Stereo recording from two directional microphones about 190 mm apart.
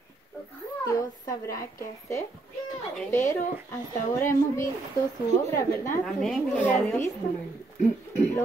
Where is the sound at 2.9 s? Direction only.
15° left (ahead or behind).